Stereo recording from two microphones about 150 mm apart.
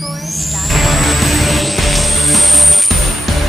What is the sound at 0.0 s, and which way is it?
Music, centre (ahead or behind).